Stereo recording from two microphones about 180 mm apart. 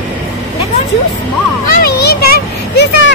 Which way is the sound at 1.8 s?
60° left (ahead or behind).